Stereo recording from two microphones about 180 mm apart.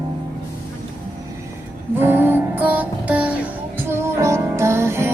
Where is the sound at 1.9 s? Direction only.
10° right (ahead or behind).